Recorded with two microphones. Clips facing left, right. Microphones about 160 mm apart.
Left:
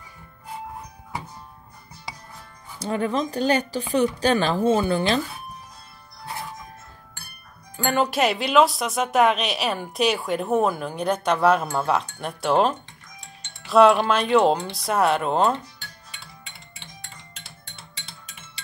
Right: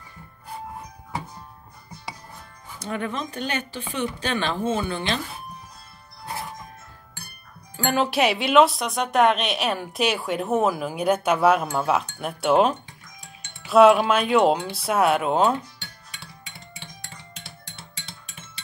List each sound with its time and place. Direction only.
2.8 s speech: 35° left (ahead or behind)
7.7 s speech: centre (ahead or behind)